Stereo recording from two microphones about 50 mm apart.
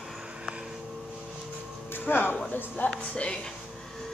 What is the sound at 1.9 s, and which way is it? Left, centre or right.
Speech, left.